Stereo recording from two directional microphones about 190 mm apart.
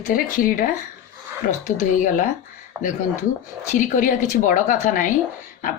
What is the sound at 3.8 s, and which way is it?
Speech, 45° left (ahead or behind).